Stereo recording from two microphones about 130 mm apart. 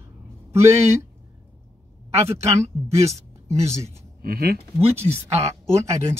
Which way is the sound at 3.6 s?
20° right (ahead or behind).